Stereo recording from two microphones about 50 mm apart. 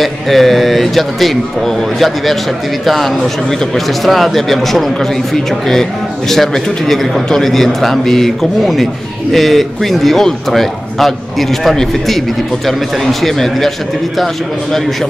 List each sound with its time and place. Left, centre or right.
0.0 s a man's voice: centre